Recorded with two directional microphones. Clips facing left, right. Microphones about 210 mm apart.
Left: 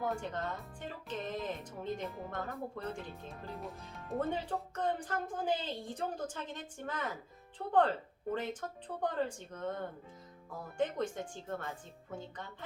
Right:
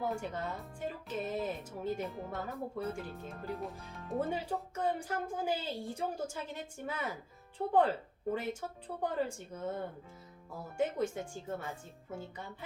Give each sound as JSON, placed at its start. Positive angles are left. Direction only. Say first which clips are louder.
{"t": 0.0, "sound": "speech", "louder": "even", "side_deg": -10}
{"t": 9.0, "sound": "speech", "louder": "even", "side_deg": -10}